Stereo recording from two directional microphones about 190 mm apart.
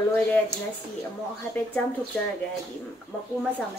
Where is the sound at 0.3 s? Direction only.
10° left (ahead or behind).